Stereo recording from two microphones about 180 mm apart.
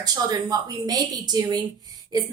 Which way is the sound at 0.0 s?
20° right (ahead or behind).